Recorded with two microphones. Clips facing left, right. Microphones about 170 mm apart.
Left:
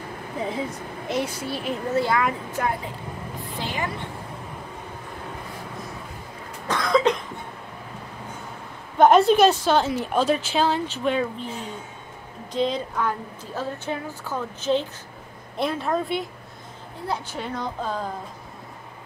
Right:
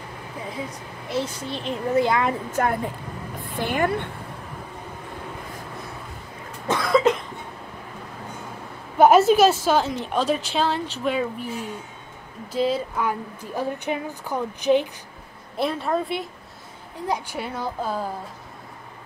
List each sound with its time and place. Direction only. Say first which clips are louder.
1.0 s a woman's voice: even; 15° left (ahead or behind)
2.0 s speech: right 2 dB; 20° right (ahead or behind)
2.5 s a woman's voice: right 3 dB; 50° right (ahead or behind)
6.7 s cough: right 1 dB; 5° right (ahead or behind)
8.9 s a woman's voice: right 1 dB; 5° right (ahead or behind)
15.5 s a woman's voice: right 1 dB; centre (ahead or behind)